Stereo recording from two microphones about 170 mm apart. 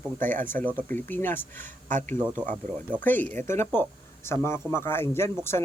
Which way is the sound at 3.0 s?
10° left (ahead or behind).